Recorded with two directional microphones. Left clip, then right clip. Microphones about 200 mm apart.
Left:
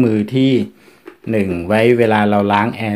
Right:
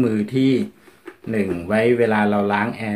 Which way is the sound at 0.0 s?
35° left (ahead or behind).